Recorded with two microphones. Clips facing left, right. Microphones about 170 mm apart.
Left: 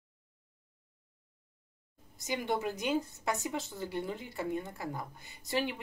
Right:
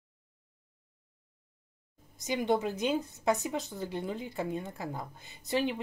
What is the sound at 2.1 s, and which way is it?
Speech, 20° right (ahead or behind).